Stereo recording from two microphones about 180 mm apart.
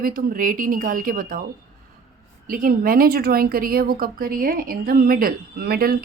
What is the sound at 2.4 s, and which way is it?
A woman's voice, 50° right (ahead or behind).